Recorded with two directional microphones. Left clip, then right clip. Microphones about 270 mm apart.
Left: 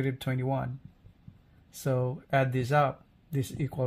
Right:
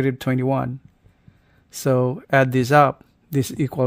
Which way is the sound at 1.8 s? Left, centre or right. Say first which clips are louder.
Right 11 dB; right.